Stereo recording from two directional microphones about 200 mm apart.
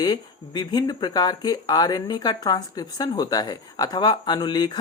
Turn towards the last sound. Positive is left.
turn(degrees=20)  # may be behind; listen again after turning